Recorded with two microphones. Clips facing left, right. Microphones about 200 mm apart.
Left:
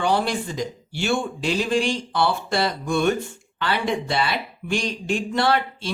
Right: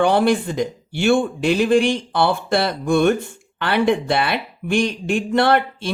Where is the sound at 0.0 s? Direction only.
55° right (ahead or behind).